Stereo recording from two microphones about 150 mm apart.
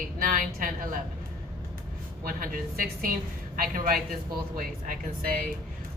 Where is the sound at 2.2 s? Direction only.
70° right (ahead or behind).